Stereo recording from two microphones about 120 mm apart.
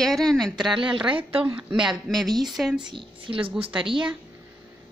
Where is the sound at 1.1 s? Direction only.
50° right (ahead or behind).